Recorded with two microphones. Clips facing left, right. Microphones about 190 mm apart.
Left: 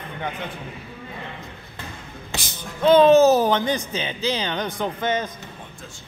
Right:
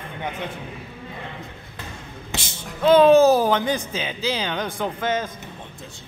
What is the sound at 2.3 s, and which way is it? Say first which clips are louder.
Music: right 1 dB; 25° right (ahead or behind).